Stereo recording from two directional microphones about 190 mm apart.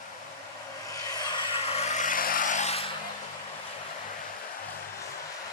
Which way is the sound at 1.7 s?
35° left (ahead or behind).